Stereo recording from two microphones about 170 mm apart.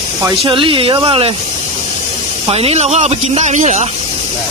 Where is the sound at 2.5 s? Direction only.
35° right (ahead or behind).